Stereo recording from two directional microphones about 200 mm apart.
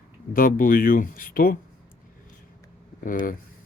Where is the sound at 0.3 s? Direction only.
45° left (ahead or behind).